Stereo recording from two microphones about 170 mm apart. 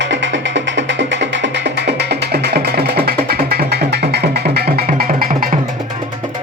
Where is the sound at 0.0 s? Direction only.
90° right; by 5.5 s 55° right (ahead or behind).